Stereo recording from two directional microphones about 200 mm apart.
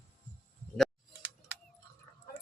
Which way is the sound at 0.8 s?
5° right (ahead or behind).